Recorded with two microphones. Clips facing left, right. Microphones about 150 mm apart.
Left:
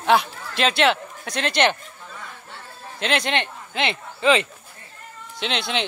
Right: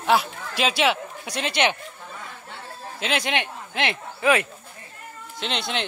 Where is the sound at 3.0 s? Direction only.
10° right (ahead or behind).